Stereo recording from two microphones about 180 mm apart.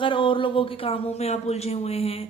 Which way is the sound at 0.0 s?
30° left (ahead or behind).